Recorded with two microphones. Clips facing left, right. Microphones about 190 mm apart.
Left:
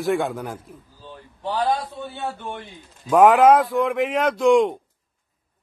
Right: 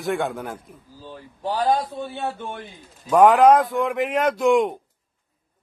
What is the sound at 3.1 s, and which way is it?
A man's voice, centre (ahead or behind).